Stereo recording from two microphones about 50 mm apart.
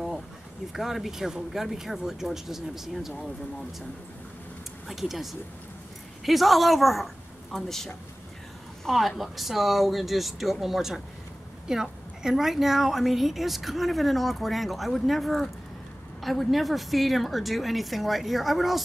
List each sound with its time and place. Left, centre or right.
0.7 s speech: centre
4.8 s a woman's voice: centre